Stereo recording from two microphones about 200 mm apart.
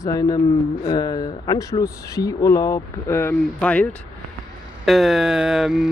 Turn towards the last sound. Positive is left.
turn(degrees=0)  # may be behind; listen again after turning